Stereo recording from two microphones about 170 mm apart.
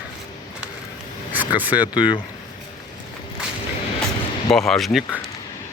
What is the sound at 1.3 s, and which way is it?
Speech, 10° right (ahead or behind).